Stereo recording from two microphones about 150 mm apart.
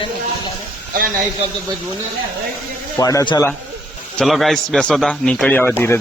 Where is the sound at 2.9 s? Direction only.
20° left (ahead or behind).